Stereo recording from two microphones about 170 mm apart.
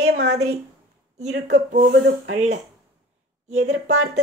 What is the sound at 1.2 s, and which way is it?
Speech, 45° right (ahead or behind).